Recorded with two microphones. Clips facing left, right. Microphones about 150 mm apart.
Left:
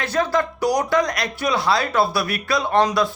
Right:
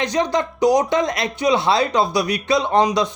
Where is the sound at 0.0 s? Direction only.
20° right (ahead or behind).